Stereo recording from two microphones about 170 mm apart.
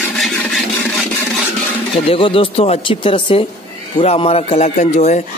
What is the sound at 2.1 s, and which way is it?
Speech, 30° left (ahead or behind).